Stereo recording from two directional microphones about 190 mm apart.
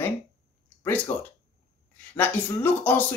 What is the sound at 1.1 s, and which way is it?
Speech, 35° left (ahead or behind).